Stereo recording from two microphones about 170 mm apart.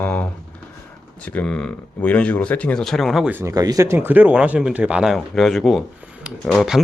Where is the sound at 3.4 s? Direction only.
20° right (ahead or behind).